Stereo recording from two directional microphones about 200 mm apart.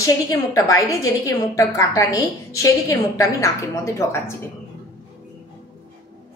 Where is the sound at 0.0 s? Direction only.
15° left (ahead or behind).